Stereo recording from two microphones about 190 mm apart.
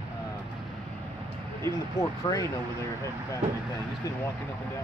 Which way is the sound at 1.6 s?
15° left (ahead or behind).